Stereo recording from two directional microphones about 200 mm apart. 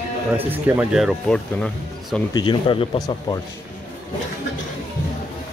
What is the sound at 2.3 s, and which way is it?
Speech, 25° left (ahead or behind).